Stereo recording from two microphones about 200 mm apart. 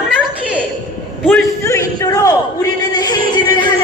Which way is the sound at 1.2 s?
10° left (ahead or behind).